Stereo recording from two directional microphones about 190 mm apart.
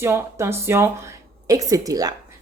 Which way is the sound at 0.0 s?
15° right (ahead or behind).